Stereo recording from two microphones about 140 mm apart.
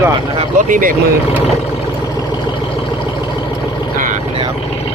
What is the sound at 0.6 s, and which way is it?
Speech, 75° right (ahead or behind).